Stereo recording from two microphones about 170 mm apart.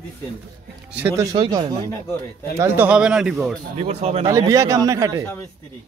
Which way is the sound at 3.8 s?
35° right (ahead or behind).